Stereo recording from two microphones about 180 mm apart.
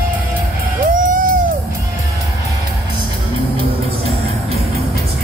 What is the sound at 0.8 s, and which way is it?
Music, 50° right (ahead or behind).